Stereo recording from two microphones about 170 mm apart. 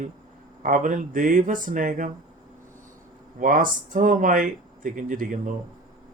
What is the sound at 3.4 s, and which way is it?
Speech, 50° right (ahead or behind).